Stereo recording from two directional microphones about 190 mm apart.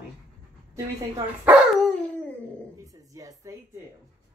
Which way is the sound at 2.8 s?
15° right (ahead or behind).